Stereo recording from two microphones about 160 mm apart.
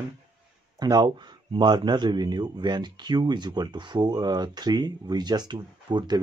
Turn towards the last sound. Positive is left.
turn(degrees=-30)  # may be behind; listen again after turning